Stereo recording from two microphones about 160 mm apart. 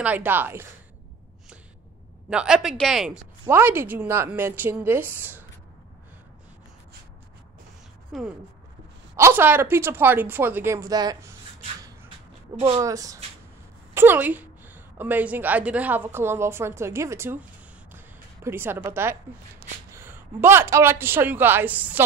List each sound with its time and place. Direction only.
0.0 s a woman's voice: 10° right (ahead or behind)
2.2 s speech: 5° right (ahead or behind)
3.4 s a woman's voice: 15° right (ahead or behind)
8.1 s speech: centre (ahead or behind)
9.1 s a woman's voice: 15° right (ahead or behind)
12.5 s a woman's voice: 40° right (ahead or behind)
12.8 s a woman's voice: 20° right (ahead or behind)
17.9 s a sound: 15° right (ahead or behind)
19.9 s speech: 15° right (ahead or behind)